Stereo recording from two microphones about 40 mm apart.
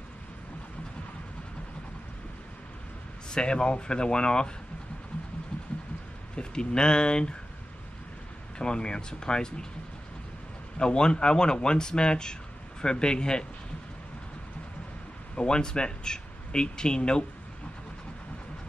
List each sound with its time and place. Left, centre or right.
3.3 s speech: left
6.3 s speech: centre
8.5 s speech: left
10.8 s speech: left
15.3 s speech: left